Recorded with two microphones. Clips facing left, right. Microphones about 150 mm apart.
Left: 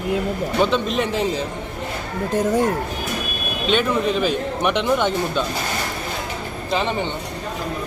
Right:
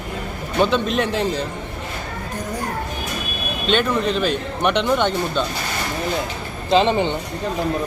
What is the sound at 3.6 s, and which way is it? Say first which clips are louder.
A man's voice: even; 5° left (ahead or behind).